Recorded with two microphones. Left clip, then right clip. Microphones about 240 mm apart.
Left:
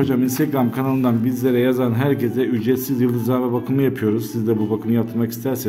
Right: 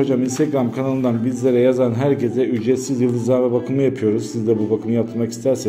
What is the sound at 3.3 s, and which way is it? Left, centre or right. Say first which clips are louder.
Speech: right 3 dB; left.